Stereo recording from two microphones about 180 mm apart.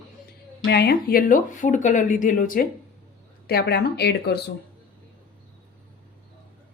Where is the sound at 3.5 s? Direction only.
65° left (ahead or behind).